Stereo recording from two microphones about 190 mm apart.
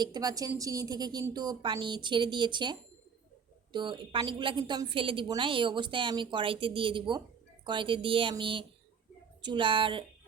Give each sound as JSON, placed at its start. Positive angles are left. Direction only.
{"t": 0.0, "sound": "a woman's voice", "side_deg": -20}